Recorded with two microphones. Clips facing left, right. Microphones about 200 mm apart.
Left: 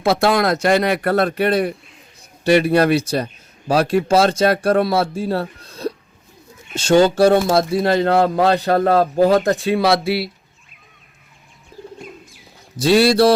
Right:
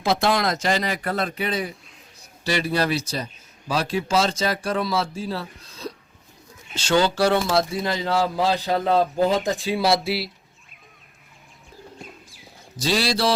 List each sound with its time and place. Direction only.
0.2 s a man's voice: 60° left (ahead or behind)
6.7 s a man's voice: 50° left (ahead or behind); by 9.0 s 65° left (ahead or behind)
9.4 s speech: centre (ahead or behind)
9.7 s a man's voice: 60° left (ahead or behind)
10.0 s speech: centre (ahead or behind)
12.8 s a man's voice: 60° left (ahead or behind)